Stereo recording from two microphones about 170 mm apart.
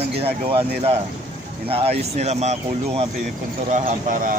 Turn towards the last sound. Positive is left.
turn(degrees=-55)  # may be behind; listen again after turning